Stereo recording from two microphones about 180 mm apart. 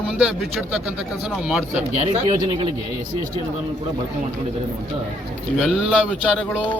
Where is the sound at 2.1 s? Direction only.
30° right (ahead or behind).